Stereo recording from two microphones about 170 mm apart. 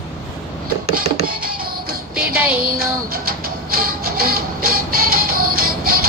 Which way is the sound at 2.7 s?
60° right (ahead or behind).